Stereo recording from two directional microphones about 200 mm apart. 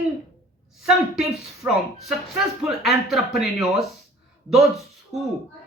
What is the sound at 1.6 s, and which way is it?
Speech, 15° right (ahead or behind).